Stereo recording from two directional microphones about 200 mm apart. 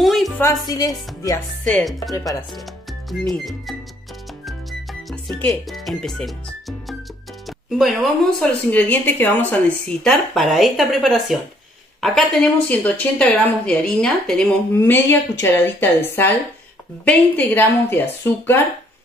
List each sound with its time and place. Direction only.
0.0 s music: centre (ahead or behind)
0.4 s a woman's voice: 15° left (ahead or behind)
1.7 s speech: centre (ahead or behind)
2.5 s music: centre (ahead or behind)
7.4 s a woman's voice: centre (ahead or behind)